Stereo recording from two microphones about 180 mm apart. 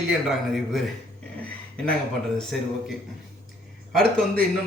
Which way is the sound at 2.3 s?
Centre (ahead or behind).